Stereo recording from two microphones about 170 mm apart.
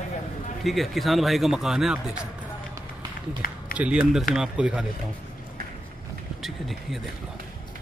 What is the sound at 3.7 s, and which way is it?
Speech, 5° right (ahead or behind).